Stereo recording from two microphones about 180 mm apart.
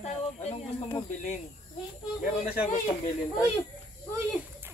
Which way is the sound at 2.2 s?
45° left (ahead or behind).